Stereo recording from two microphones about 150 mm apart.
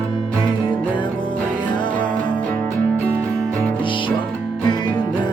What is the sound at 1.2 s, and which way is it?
Music, 30° left (ahead or behind).